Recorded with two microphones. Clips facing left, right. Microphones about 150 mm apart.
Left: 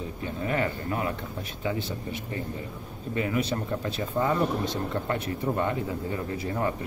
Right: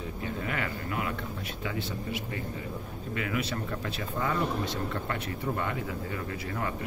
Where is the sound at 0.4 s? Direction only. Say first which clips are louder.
Left 8 dB; 30° left (ahead or behind).